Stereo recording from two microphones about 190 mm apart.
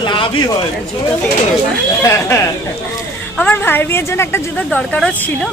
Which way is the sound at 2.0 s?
15° left (ahead or behind).